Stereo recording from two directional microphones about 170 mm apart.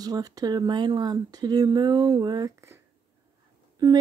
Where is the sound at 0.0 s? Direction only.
20° right (ahead or behind).